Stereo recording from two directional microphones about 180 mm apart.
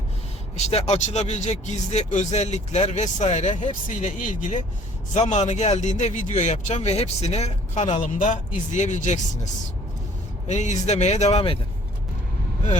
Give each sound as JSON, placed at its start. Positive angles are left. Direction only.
{"t": 0.5, "sound": "a man's voice", "side_deg": 35}